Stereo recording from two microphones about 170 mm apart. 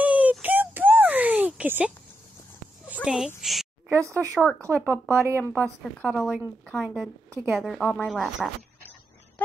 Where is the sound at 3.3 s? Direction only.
Centre (ahead or behind).